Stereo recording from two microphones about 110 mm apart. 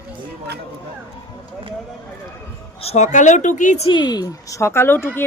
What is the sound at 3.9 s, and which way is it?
Speech, 40° left (ahead or behind).